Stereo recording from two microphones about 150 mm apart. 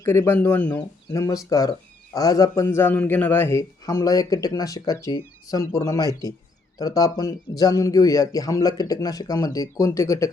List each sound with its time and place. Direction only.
0.0 s a man's voice: 15° left (ahead or behind)